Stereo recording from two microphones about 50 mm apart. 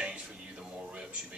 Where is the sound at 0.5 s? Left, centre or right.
Right.